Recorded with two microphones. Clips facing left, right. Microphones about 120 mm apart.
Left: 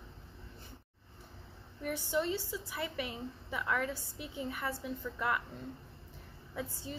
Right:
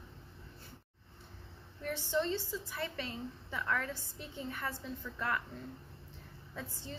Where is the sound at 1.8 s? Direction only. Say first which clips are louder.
Even; 10° left (ahead or behind).